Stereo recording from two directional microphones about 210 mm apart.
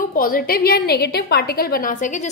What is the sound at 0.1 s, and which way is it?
A woman's voice, 45° left (ahead or behind).